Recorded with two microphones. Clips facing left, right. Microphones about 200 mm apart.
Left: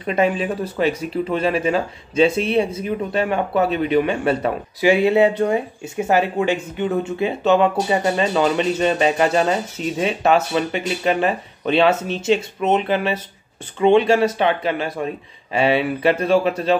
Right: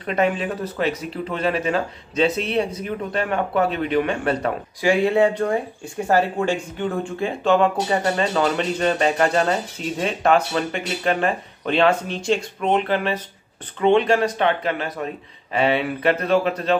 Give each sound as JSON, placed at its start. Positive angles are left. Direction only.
{"t": 0.0, "sound": "speech", "side_deg": 10}
{"t": 6.8, "sound": "speech", "side_deg": 5}
{"t": 12.5, "sound": "speech", "side_deg": 25}
{"t": 12.8, "sound": "speech", "side_deg": 10}